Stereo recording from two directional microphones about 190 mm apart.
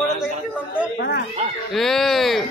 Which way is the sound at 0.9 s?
60° left (ahead or behind).